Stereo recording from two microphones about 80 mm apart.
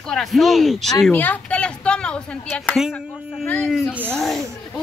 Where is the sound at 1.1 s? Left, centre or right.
Left.